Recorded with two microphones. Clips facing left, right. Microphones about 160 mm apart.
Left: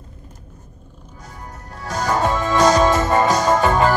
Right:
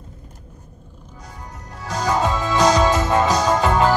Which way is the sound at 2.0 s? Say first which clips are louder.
Left 1 dB; 55° left (ahead or behind).